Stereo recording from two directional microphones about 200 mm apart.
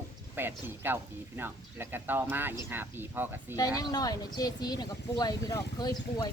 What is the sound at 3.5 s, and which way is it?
Speech, 20° left (ahead or behind).